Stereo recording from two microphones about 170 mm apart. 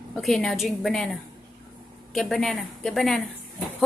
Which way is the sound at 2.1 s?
Centre (ahead or behind).